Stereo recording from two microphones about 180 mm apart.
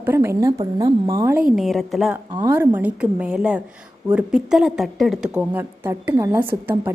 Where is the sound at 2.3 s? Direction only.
15° right (ahead or behind).